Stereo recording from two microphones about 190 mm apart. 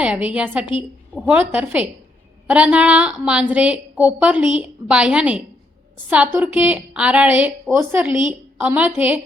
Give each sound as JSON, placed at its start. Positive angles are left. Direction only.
{"t": 0.0, "sound": "a woman's voice", "side_deg": -5}